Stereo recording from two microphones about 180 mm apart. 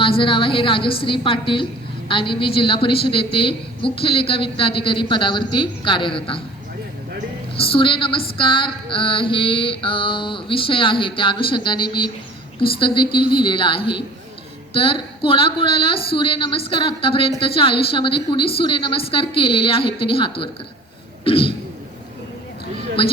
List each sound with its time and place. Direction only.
0.0 s mantra: 30° left (ahead or behind)
7.5 s a woman's voice: 30° left (ahead or behind)
8.4 s mantra: 30° left (ahead or behind)
21.2 s speech: 30° left (ahead or behind)